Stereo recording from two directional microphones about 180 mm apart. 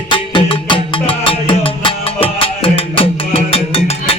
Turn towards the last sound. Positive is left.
turn(degrees=30)  # may be behind; listen again after turning